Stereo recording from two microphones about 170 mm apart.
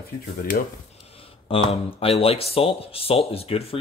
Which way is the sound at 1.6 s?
35° left (ahead or behind).